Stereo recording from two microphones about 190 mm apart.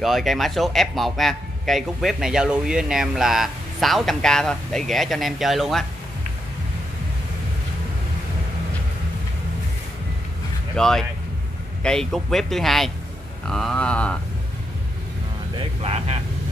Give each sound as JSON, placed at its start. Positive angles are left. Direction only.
{"t": 0.0, "sound": "speech", "side_deg": 0}
{"t": 10.8, "sound": "speech", "side_deg": 5}
{"t": 15.5, "sound": "speech", "side_deg": -30}